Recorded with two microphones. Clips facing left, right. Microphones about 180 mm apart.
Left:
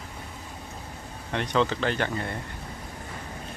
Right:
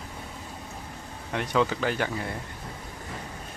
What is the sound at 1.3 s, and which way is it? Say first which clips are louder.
Speech: even; 5° right (ahead or behind).